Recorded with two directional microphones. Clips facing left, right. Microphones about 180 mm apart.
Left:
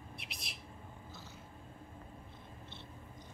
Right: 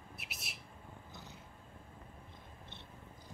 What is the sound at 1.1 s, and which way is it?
Cat, 20° right (ahead or behind).